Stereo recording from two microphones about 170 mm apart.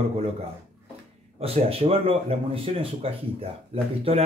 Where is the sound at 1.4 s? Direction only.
35° right (ahead or behind).